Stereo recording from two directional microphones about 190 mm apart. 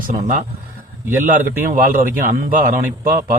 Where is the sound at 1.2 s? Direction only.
45° right (ahead or behind).